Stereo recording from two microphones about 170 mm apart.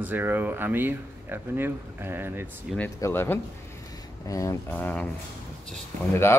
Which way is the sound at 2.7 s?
10° left (ahead or behind).